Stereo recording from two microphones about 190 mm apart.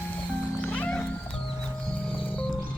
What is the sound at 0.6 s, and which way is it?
Music, 5° left (ahead or behind).